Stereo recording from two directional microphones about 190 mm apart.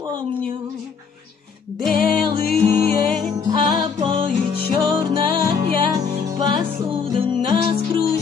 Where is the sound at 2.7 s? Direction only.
35° right (ahead or behind).